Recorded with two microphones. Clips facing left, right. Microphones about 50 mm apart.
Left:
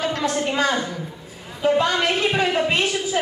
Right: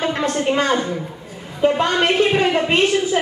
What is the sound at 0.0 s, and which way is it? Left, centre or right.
A woman's voice, right.